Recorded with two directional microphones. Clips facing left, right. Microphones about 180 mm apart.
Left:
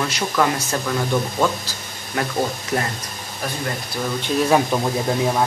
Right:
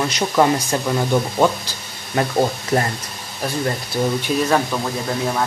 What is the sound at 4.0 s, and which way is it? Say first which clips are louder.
Speech: right 6 dB; 35° right (ahead or behind).